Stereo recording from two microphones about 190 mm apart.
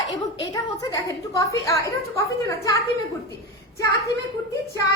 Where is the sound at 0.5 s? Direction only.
20° left (ahead or behind).